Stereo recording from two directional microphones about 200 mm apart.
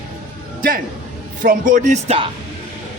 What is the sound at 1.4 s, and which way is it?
Speech, 40° right (ahead or behind).